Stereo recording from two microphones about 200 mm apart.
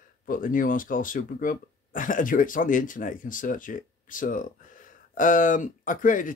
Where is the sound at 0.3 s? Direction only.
45° left (ahead or behind).